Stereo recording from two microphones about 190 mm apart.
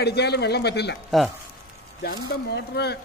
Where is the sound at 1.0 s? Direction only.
Centre (ahead or behind).